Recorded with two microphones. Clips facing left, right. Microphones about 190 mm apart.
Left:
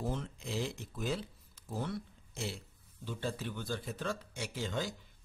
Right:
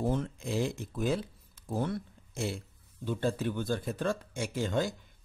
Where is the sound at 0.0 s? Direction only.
50° right (ahead or behind).